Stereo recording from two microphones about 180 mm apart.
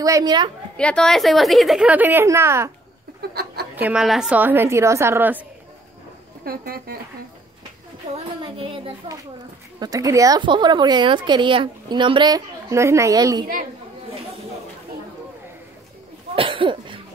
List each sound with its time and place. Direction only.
0.0 s a woman's voice: 20° right (ahead or behind)
0.7 s a woman's voice: 5° left (ahead or behind); by 2.7 s 15° right (ahead or behind)
3.2 s a sound: 60° right (ahead or behind)
3.7 s a woman's voice: 5° right (ahead or behind)
6.4 s a woman's voice: 55° right (ahead or behind)
8.1 s a woman's voice: 30° right (ahead or behind)
9.8 s a woman's voice: 20° right (ahead or behind)
16.3 s cough: 30° right (ahead or behind)